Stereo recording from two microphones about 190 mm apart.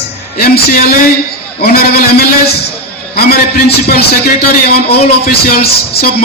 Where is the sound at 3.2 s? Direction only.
55° left (ahead or behind).